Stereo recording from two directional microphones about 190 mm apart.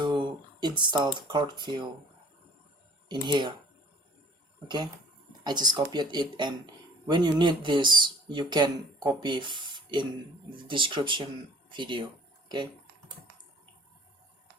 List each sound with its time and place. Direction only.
0.0 s a sound: 25° right (ahead or behind)
0.8 s speech: 25° right (ahead or behind)
3.1 s speech: 25° right (ahead or behind)
5.4 s speech: 20° right (ahead or behind)